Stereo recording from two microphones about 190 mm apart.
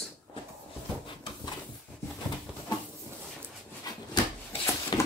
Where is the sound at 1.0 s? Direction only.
25° left (ahead or behind).